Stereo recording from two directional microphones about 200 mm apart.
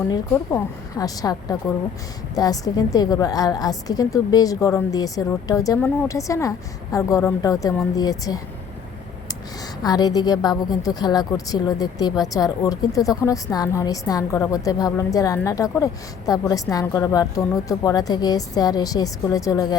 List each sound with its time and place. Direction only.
0.1 s speech: 20° left (ahead or behind)
9.8 s a woman's voice: 20° left (ahead or behind)